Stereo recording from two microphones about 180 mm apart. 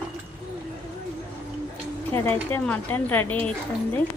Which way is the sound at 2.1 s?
10° left (ahead or behind).